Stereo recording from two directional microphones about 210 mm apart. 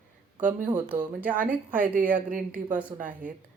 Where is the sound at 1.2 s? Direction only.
10° right (ahead or behind).